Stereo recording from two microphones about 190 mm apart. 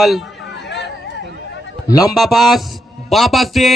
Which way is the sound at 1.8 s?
20° left (ahead or behind).